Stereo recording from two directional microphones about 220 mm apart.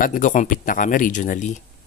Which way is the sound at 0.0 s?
35° left (ahead or behind).